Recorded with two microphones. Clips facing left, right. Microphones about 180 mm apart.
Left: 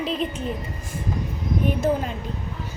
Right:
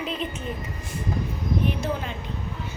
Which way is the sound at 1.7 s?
45° left (ahead or behind).